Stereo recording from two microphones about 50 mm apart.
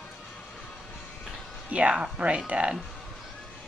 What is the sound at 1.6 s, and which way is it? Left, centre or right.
Speech, right.